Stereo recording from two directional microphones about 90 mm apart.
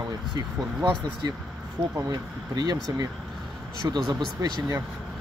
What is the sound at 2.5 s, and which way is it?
Speech, 50° right (ahead or behind).